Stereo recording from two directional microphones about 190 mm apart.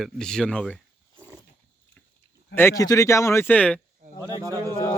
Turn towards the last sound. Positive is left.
turn(degrees=-20)  # may be behind; listen again after turning